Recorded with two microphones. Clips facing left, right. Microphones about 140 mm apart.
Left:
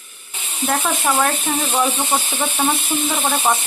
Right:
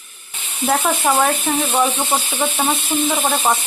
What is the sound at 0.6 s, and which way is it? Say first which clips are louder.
Speech: right 3 dB; 5° right (ahead or behind).